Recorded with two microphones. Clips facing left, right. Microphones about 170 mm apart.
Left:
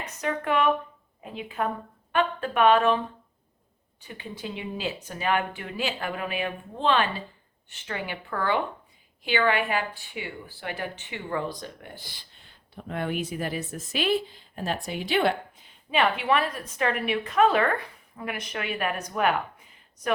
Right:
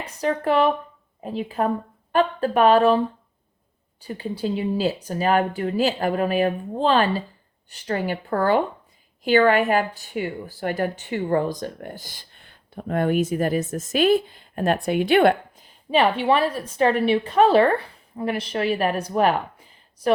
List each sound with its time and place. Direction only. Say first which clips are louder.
0.0 s a woman's voice: right 6 dB; 35° right (ahead or behind)
4.0 s a woman's voice: right 10 dB; 35° right (ahead or behind); by 15.6 s 55° right (ahead or behind)
15.9 s a woman's voice: right 5 dB; 30° right (ahead or behind)